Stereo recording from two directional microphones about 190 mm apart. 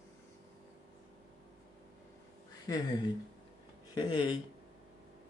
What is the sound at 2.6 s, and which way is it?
Speech, 20° left (ahead or behind).